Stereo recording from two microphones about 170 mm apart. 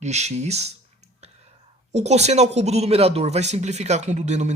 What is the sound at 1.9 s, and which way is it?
Speech, 40° right (ahead or behind).